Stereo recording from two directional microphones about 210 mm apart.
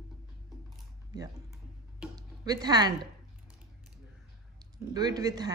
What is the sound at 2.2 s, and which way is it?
Music, 20° right (ahead or behind).